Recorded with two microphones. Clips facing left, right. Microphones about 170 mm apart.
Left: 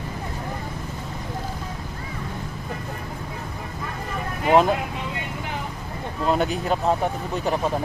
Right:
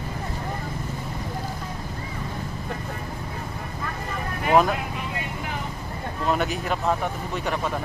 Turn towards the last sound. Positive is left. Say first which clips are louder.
# left 3 dB
turn(degrees=35)  # may be behind; listen again after turning